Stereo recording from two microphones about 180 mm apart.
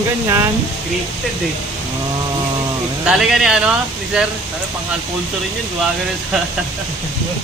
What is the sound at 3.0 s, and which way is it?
Speech, 5° right (ahead or behind).